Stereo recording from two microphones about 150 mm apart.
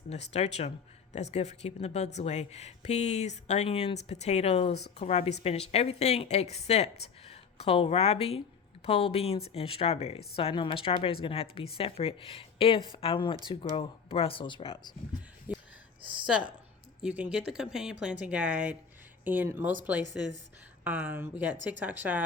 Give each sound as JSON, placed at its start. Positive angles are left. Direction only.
{"t": 0.1, "sound": "a woman's voice", "side_deg": 45}
{"t": 15.5, "sound": "whispering", "side_deg": -10}
{"t": 17.0, "sound": "speech", "side_deg": -5}